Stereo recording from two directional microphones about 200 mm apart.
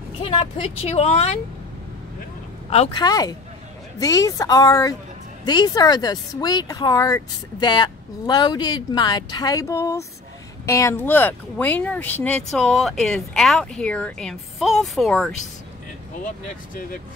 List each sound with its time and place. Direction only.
0.2 s speech: 25° left (ahead or behind)
2.7 s speech: 30° left (ahead or behind)
3.0 s speech: 20° left (ahead or behind); by 15.3 s centre (ahead or behind)